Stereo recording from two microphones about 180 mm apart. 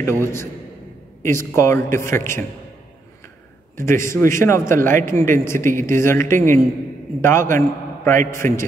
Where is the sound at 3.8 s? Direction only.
15° left (ahead or behind).